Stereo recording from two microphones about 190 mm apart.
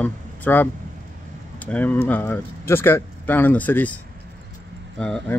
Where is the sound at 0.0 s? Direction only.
10° left (ahead or behind).